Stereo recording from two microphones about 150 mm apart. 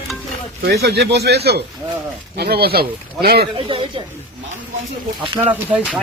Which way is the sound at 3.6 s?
35° right (ahead or behind).